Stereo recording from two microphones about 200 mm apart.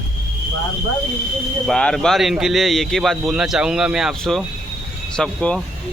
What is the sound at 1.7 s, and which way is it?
Speech, 5° left (ahead or behind).